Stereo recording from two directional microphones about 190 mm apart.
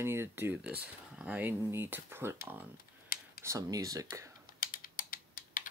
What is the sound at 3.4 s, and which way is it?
Speech, 15° right (ahead or behind).